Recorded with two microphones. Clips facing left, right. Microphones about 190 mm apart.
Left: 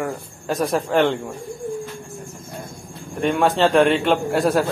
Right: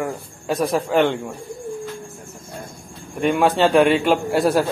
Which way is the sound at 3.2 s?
Centre (ahead or behind).